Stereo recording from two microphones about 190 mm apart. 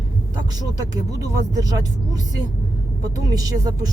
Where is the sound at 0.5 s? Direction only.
20° right (ahead or behind).